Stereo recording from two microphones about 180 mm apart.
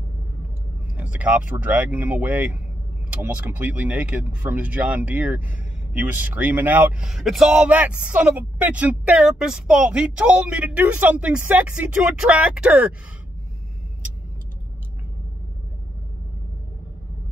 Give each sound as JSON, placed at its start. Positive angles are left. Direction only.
{"t": 0.9, "sound": "speech", "side_deg": -10}